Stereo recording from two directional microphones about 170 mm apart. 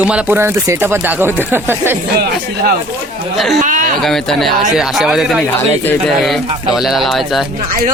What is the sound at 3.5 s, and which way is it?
Speech, 50° right (ahead or behind).